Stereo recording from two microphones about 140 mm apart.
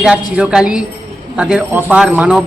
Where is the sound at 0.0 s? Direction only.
5° right (ahead or behind).